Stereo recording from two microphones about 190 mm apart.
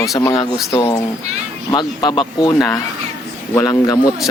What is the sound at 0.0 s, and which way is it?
Speech, 15° left (ahead or behind).